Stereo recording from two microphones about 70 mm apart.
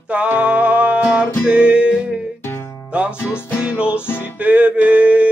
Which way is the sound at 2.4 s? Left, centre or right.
Left.